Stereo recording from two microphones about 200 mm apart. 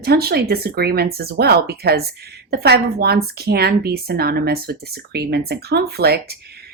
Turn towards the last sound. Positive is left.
turn(degrees=-55)  # may be behind; listen again after turning